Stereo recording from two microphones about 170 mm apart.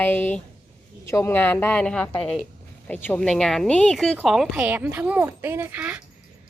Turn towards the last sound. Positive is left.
turn(degrees=-10)  # may be behind; listen again after turning